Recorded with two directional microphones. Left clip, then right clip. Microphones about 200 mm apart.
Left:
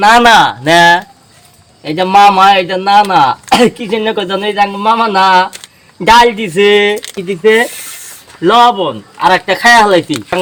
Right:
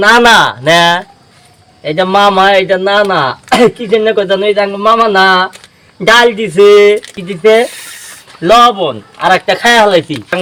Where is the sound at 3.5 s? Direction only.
25° left (ahead or behind).